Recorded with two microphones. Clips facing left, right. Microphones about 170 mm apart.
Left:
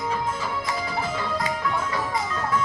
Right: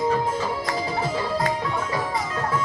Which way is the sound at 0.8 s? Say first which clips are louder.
Right 3 dB; 30° right (ahead or behind).